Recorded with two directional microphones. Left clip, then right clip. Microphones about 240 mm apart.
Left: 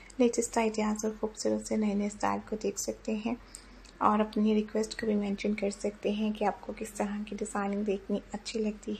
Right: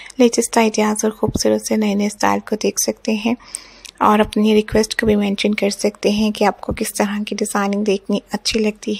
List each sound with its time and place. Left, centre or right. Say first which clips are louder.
0.2 s speech: right 13 dB; right